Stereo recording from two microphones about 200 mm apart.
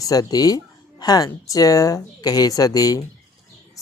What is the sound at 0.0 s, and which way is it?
Speech, 20° left (ahead or behind).